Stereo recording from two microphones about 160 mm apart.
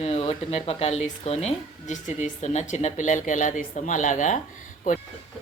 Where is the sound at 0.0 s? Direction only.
40° left (ahead or behind).